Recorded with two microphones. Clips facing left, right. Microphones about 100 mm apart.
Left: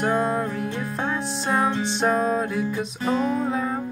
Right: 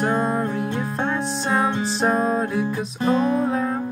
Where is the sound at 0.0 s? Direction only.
5° right (ahead or behind).